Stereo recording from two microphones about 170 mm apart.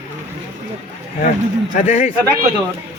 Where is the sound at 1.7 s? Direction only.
45° left (ahead or behind).